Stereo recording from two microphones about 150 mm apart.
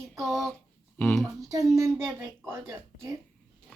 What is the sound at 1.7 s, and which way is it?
A woman's voice, 20° right (ahead or behind).